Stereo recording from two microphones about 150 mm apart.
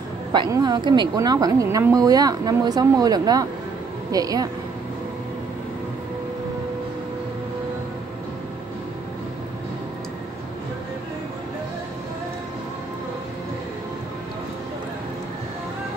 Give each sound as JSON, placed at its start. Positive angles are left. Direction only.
{"t": 0.3, "sound": "a woman's voice", "side_deg": -30}